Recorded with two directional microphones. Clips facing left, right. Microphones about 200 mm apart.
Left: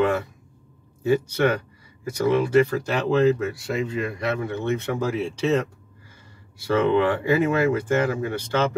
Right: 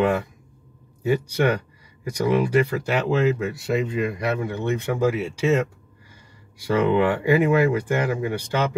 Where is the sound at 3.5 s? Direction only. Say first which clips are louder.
Right 2 dB; 20° right (ahead or behind).